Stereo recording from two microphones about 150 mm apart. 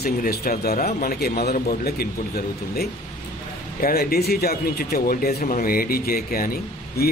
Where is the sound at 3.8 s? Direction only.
85° left.